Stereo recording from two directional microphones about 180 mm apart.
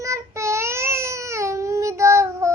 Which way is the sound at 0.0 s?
15° right (ahead or behind).